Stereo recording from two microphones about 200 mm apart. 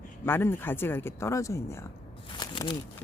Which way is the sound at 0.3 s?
10° left (ahead or behind).